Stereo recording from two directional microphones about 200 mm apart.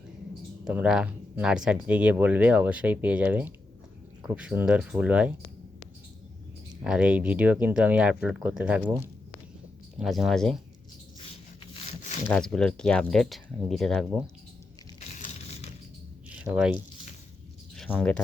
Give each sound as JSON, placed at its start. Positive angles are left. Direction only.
{"t": 0.6, "sound": "speech", "side_deg": -5}
{"t": 6.8, "sound": "speech", "side_deg": -5}
{"t": 10.0, "sound": "speech", "side_deg": 0}
{"t": 12.3, "sound": "speech", "side_deg": 5}
{"t": 15.2, "sound": "a sound", "side_deg": 35}
{"t": 16.4, "sound": "speech", "side_deg": -5}
{"t": 17.7, "sound": "speech", "side_deg": 5}